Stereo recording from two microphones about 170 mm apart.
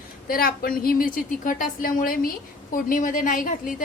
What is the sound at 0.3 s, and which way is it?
A woman's voice, 60° left (ahead or behind).